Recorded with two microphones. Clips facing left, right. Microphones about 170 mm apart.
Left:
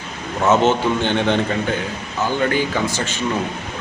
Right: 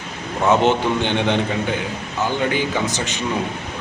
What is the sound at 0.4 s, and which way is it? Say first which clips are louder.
A man's voice: left 1 dB; 15° right (ahead or behind).